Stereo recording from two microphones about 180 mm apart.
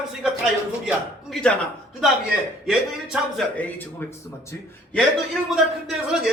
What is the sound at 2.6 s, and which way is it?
A man's voice, centre (ahead or behind).